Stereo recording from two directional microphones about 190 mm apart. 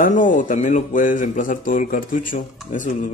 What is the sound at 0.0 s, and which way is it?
Speech, 45° left (ahead or behind).